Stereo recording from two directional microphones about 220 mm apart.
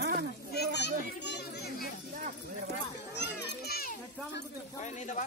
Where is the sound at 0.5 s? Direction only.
50° left (ahead or behind).